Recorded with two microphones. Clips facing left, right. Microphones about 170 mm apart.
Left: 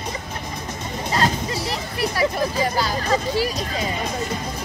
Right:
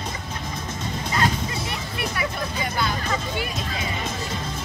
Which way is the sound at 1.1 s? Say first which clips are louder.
Left 3 dB; 35° left (ahead or behind).